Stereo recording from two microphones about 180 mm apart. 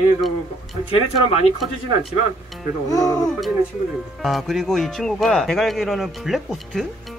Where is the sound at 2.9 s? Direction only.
20° left (ahead or behind).